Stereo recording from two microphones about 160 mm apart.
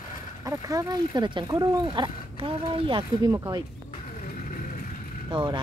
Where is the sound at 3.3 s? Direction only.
20° right (ahead or behind).